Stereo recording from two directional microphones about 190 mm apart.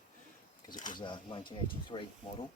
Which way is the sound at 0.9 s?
25° left (ahead or behind).